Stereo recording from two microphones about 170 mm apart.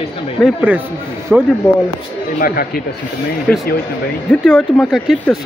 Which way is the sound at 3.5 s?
5° left (ahead or behind).